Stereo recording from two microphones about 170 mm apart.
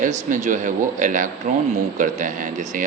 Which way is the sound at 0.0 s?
50° right (ahead or behind).